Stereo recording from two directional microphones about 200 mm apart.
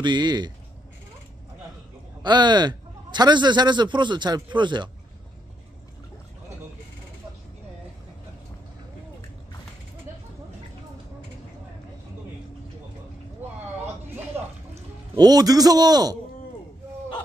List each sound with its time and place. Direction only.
0.0 s a man's voice: 20° right (ahead or behind)
2.2 s a man's voice: 20° right (ahead or behind)
15.1 s a man's voice: 20° right (ahead or behind)